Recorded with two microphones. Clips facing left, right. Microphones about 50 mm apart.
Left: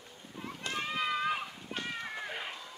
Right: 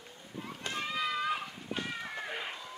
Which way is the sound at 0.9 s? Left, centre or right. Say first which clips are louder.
Left 1 dB; left.